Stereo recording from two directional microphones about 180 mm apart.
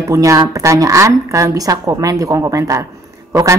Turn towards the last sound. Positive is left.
turn(degrees=-15)  # may be behind; listen again after turning